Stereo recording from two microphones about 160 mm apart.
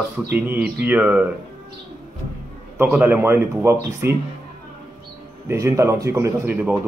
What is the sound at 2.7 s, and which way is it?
A man's voice, 10° right (ahead or behind).